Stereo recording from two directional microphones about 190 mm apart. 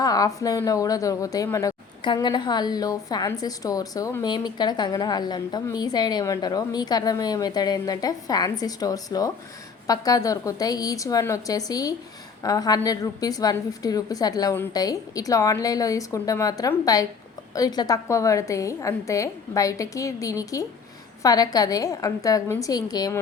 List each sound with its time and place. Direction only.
0.0 s a woman's voice: 20° left (ahead or behind)